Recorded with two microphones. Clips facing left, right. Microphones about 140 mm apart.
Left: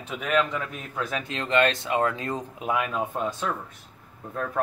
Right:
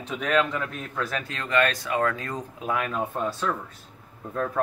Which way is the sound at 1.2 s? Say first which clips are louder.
Left 2 dB; 25° left (ahead or behind).